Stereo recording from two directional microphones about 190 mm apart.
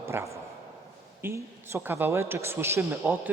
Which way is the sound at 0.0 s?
15° right (ahead or behind).